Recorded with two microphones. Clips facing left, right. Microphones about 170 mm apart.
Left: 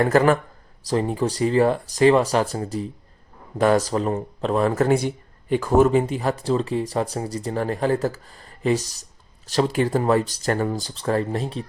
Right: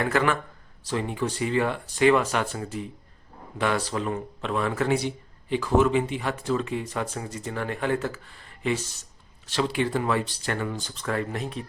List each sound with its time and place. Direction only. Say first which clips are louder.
0.0 s speech: left 7 dB; 40° left (ahead or behind)